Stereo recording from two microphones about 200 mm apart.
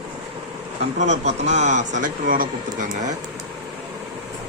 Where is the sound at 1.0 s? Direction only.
35° right (ahead or behind).